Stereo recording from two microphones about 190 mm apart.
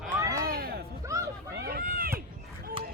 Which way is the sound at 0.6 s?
50° right (ahead or behind).